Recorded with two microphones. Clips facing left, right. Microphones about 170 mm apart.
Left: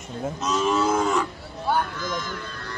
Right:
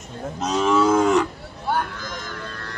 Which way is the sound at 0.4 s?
70° right (ahead or behind).